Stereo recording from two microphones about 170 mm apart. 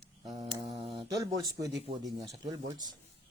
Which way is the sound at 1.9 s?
35° right (ahead or behind).